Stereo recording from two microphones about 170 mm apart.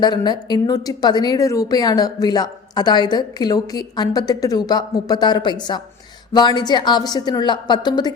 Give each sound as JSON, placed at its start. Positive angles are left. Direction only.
{"t": 0.0, "sound": "a woman's voice", "side_deg": 25}